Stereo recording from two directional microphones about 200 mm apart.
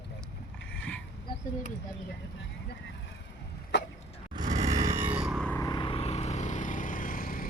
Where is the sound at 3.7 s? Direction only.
60° left (ahead or behind).